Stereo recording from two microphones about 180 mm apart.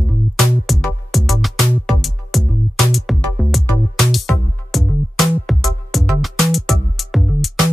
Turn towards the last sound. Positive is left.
turn(degrees=0)  # may be behind; listen again after turning